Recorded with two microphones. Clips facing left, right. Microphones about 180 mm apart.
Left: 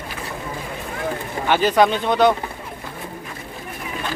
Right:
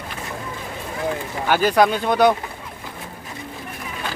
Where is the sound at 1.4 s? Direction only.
5° right (ahead or behind).